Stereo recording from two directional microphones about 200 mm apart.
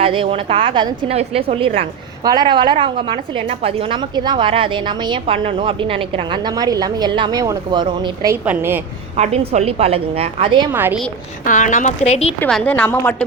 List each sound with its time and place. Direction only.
0.0 s a woman's voice: 25° right (ahead or behind)
8.4 s a woman's voice: 10° right (ahead or behind)
9.1 s a woman's voice: 30° right (ahead or behind)
10.7 s a woman's voice: 10° right (ahead or behind)
11.4 s a woman's voice: 40° left (ahead or behind)
12.4 s a woman's voice: 5° left (ahead or behind)